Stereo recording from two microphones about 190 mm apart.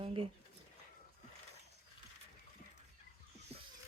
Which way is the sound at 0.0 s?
30° right (ahead or behind).